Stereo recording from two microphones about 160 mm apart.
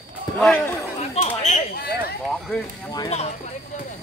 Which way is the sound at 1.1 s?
45° left (ahead or behind).